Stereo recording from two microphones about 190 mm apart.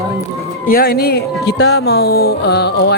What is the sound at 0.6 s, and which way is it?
Speech, 50° left (ahead or behind).